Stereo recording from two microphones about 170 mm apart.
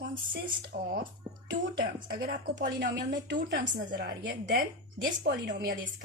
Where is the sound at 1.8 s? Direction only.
55° right (ahead or behind); by 2.9 s 75° right (ahead or behind).